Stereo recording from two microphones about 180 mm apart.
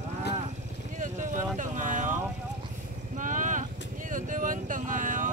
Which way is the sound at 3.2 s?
45° right (ahead or behind).